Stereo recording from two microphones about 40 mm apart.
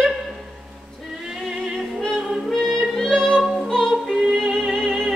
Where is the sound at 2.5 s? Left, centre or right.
Centre.